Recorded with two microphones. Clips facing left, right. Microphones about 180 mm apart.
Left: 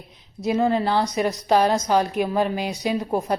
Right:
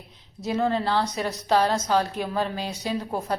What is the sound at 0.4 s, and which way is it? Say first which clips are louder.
A woman's voice: left 4 dB; 15° left (ahead or behind).